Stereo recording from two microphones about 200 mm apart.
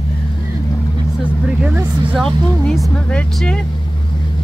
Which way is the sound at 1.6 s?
5° right (ahead or behind).